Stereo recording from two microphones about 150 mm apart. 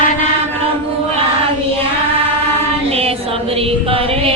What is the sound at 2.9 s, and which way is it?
Music, 40° right (ahead or behind).